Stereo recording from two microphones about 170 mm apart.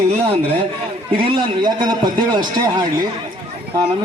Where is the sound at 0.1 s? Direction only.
35° right (ahead or behind).